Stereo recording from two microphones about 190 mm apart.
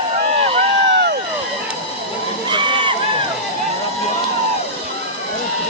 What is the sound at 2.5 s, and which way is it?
Crowd, 25° right (ahead or behind).